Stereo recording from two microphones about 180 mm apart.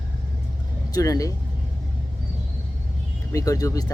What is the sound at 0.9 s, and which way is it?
Speech, 20° left (ahead or behind).